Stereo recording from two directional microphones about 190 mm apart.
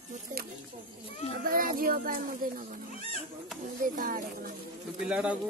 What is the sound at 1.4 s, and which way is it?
Speech, 50° right (ahead or behind).